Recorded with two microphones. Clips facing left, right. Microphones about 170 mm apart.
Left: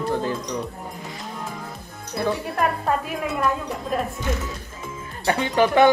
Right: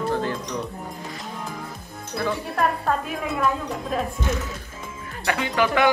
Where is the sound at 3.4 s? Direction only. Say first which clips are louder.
Right 1 dB; centre (ahead or behind).